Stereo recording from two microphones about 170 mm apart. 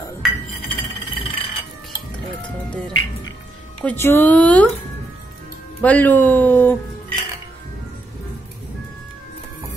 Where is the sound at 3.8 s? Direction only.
10° left (ahead or behind).